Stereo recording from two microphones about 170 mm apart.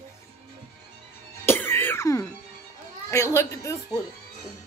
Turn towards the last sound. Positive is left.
turn(degrees=15)  # may be behind; listen again after turning